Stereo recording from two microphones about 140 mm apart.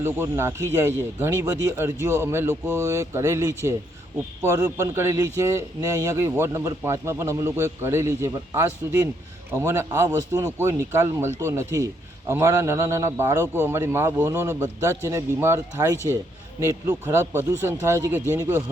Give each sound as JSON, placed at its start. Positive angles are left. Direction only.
{"t": 0.0, "sound": "a man's voice", "side_deg": -20}